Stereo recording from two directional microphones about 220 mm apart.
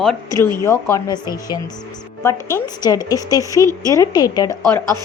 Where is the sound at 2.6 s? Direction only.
15° left (ahead or behind).